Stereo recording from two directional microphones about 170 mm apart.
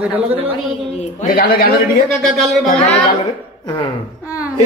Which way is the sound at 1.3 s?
60° left (ahead or behind).